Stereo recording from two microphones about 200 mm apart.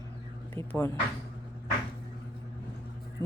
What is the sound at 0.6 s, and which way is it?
Speech, 25° right (ahead or behind).